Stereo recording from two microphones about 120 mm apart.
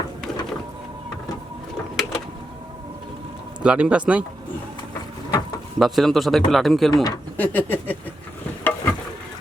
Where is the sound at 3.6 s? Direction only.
10° right (ahead or behind).